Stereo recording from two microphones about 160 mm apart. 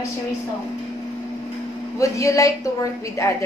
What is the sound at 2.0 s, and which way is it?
A woman's voice, 20° left (ahead or behind).